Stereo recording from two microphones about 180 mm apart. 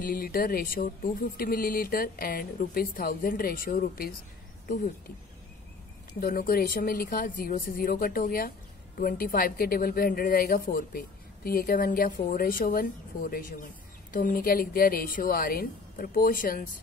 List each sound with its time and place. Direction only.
0.0 s speech: 55° left (ahead or behind)
6.2 s a woman's voice: 55° left (ahead or behind)
14.1 s speech: 50° left (ahead or behind)